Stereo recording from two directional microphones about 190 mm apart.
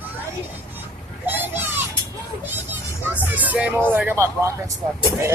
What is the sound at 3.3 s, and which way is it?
Speech, 10° right (ahead or behind).